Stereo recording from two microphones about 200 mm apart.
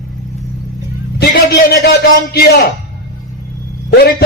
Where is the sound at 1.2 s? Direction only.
50° left (ahead or behind).